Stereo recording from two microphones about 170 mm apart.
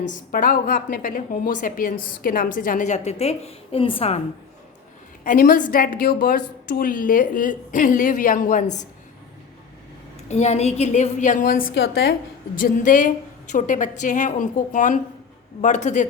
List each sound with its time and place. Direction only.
0.1 s a woman's voice: 55° left (ahead or behind); by 4.2 s 35° left (ahead or behind)
5.2 s a woman's voice: 50° left (ahead or behind)
10.2 s a woman's voice: 40° left (ahead or behind)
11.7 s a woman's voice: 70° left (ahead or behind)
12.5 s a woman's voice: 50° left (ahead or behind)